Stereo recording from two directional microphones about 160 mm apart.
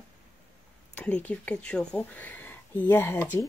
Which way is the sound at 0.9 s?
10° left (ahead or behind).